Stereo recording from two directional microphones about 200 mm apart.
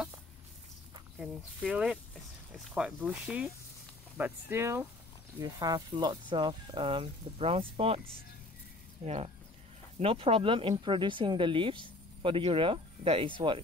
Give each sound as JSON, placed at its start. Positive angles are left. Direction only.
{"t": 1.2, "sound": "speech", "side_deg": -5}
{"t": 9.0, "sound": "speech", "side_deg": -30}